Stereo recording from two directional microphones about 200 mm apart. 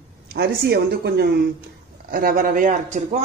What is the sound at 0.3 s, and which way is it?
Speech, 55° right (ahead or behind).